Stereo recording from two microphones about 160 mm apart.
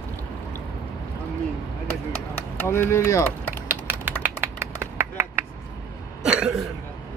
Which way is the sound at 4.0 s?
15° right (ahead or behind).